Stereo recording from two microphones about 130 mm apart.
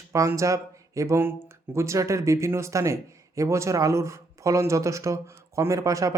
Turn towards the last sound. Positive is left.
turn(degrees=-25)  # may be behind; listen again after turning